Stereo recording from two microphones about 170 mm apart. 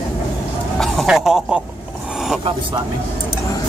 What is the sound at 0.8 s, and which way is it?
Speech, centre (ahead or behind).